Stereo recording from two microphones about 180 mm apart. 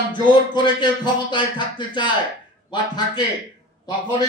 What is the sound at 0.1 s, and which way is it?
Speech, 25° left (ahead or behind).